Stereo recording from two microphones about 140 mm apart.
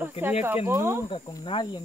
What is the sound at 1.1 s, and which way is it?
Speech, 30° left (ahead or behind).